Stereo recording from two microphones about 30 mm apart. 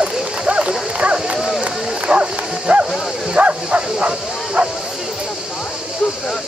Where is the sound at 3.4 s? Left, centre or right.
Right.